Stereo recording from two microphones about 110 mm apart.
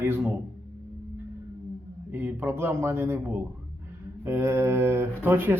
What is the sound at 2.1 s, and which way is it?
Speech, 20° right (ahead or behind).